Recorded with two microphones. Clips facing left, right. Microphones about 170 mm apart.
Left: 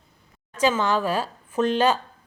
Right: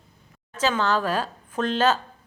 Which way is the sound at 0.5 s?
10° left (ahead or behind).